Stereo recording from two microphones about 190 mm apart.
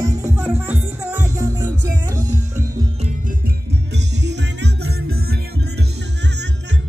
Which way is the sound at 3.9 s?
65° right (ahead or behind).